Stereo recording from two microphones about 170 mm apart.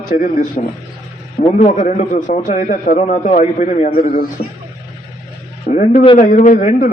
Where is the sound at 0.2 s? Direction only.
55° left (ahead or behind).